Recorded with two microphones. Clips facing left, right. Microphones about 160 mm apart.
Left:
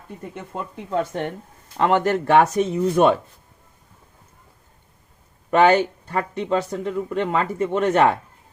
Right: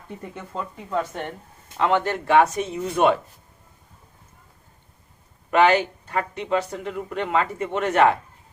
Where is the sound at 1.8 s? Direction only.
45° left (ahead or behind).